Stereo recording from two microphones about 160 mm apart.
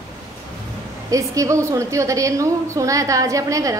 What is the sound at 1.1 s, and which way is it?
A woman's voice, 20° right (ahead or behind).